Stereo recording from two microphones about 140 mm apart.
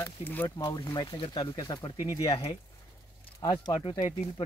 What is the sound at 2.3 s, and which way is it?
Speech, 40° left (ahead or behind).